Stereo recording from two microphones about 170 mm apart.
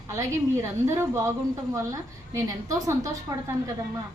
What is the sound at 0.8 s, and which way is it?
Speech, 15° right (ahead or behind).